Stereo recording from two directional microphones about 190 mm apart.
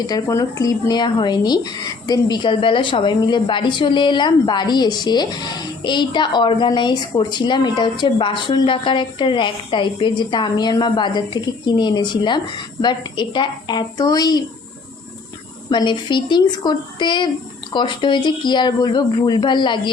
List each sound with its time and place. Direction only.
0.1 s speech: 15° left (ahead or behind)
15.7 s speech: 25° left (ahead or behind)